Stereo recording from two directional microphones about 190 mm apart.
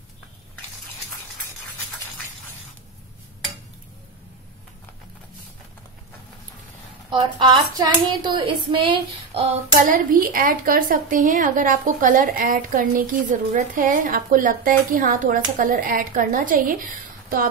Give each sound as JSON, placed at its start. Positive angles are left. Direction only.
{"t": 7.1, "sound": "speech", "side_deg": -25}
{"t": 9.8, "sound": "a woman's voice", "side_deg": -45}